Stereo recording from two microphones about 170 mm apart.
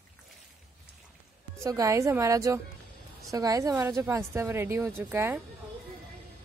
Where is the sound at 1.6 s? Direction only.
20° right (ahead or behind).